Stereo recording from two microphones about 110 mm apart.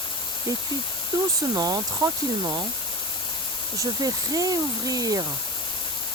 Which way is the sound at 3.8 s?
35° right (ahead or behind).